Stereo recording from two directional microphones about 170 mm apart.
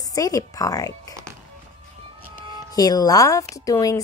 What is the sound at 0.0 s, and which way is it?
A woman's voice, 20° left (ahead or behind).